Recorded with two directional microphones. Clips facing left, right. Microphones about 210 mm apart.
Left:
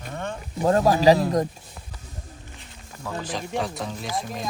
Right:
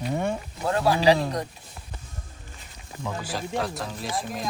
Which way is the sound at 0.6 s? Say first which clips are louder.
Left 3 dB; 40° left (ahead or behind).